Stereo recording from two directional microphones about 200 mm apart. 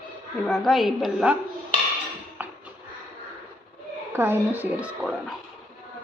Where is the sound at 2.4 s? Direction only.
10° right (ahead or behind).